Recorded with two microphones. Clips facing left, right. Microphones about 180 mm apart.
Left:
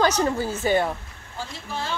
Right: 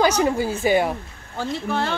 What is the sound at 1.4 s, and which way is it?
Speech, 65° right (ahead or behind).